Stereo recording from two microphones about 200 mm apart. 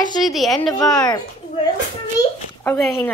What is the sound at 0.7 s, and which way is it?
Speech, 20° left (ahead or behind).